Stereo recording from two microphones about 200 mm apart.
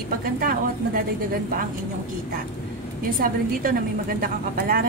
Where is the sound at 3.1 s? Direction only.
45° right (ahead or behind).